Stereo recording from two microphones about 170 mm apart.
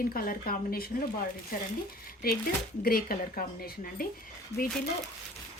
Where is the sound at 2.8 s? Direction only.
60° left (ahead or behind).